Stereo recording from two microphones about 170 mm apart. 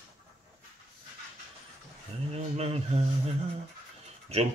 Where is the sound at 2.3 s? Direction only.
40° right (ahead or behind).